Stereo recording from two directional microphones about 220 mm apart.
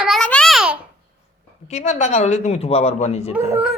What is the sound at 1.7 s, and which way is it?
Speech, 30° left (ahead or behind).